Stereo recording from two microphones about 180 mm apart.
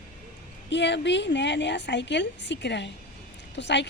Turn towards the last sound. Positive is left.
turn(degrees=75)  # may be behind; listen again after turning